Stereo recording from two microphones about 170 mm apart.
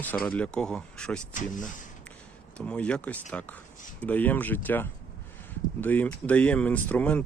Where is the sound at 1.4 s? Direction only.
50° left (ahead or behind).